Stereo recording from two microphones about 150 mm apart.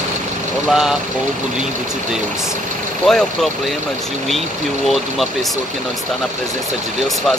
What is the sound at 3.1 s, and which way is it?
Speech, centre (ahead or behind).